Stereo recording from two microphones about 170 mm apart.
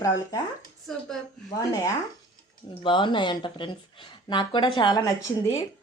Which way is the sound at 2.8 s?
30° left (ahead or behind).